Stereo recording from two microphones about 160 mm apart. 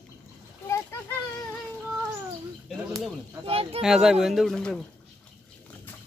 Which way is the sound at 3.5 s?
35° right (ahead or behind).